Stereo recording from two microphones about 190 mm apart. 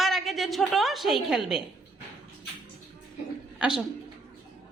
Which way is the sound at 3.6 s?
Centre (ahead or behind).